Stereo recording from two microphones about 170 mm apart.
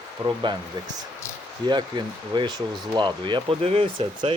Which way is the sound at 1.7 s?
25° right (ahead or behind).